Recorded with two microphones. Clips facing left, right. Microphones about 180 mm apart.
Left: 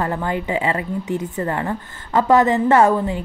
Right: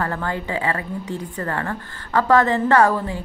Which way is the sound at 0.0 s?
20° left (ahead or behind).